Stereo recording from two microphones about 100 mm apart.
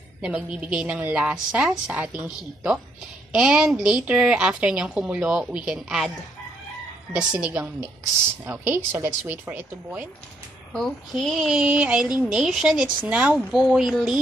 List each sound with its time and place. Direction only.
0.2 s speech: 10° right (ahead or behind)
7.1 s speech: 15° right (ahead or behind)
10.7 s speech: 5° left (ahead or behind)